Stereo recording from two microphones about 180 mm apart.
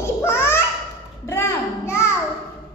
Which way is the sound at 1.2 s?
15° left (ahead or behind).